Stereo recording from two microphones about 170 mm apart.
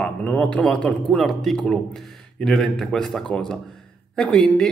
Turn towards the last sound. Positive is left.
turn(degrees=5)  # may be behind; listen again after turning